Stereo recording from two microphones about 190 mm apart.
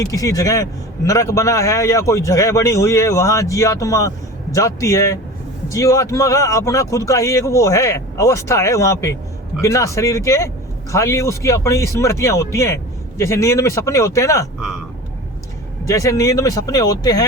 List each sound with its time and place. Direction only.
0.0 s a man's voice: 15° left (ahead or behind)
15.9 s speech: 15° left (ahead or behind)